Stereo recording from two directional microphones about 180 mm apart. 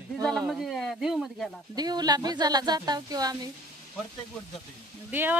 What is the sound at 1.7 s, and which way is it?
A woman's voice, 20° right (ahead or behind).